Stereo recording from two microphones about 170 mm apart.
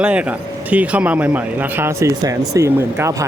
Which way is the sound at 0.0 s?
5° right (ahead or behind).